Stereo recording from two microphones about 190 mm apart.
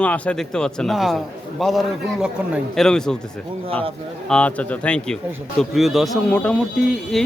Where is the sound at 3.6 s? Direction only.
30° right (ahead or behind).